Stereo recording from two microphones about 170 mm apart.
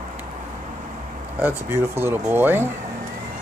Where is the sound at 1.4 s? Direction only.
15° right (ahead or behind).